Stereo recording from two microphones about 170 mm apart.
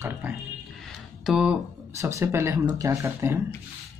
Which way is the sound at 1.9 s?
15° right (ahead or behind).